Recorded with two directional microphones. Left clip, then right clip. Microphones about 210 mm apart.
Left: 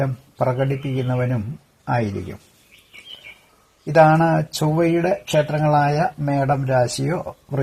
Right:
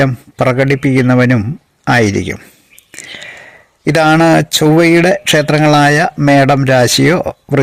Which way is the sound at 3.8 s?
50° right (ahead or behind).